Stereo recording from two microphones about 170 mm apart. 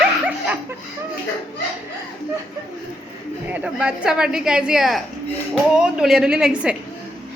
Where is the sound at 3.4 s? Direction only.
5° right (ahead or behind).